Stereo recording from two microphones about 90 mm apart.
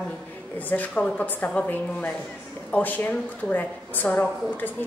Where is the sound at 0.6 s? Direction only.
15° left (ahead or behind).